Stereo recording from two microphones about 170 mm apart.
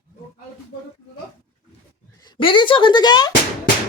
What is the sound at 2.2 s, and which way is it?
Speech, 30° left (ahead or behind).